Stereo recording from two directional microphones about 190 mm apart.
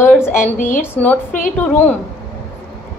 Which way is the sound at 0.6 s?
40° left (ahead or behind).